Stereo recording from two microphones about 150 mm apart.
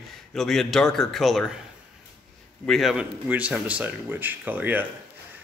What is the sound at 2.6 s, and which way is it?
Speech, centre (ahead or behind).